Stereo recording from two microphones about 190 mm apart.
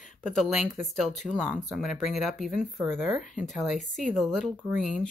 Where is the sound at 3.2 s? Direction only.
40° left (ahead or behind).